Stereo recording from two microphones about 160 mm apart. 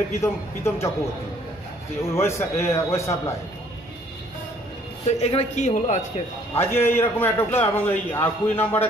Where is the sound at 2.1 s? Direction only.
15° left (ahead or behind).